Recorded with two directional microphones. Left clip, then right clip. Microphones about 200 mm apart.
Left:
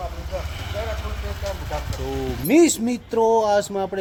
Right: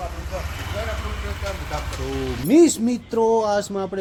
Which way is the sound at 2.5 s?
Centre (ahead or behind).